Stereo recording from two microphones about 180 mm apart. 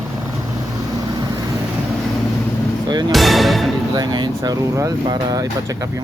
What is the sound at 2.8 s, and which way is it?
Music, 25° right (ahead or behind).